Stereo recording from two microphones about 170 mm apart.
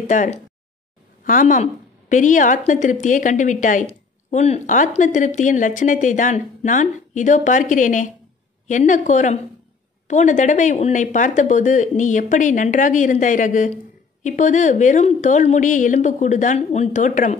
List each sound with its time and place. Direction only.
0.1 s speech: 45° left (ahead or behind)